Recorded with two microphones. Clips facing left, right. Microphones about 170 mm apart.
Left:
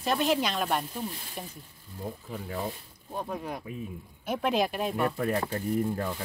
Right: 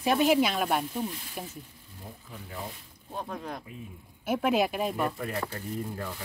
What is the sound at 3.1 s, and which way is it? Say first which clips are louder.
Speech: left 2 dB; 10° left (ahead or behind).